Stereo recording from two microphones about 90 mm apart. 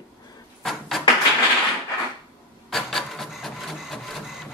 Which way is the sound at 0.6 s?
Centre (ahead or behind).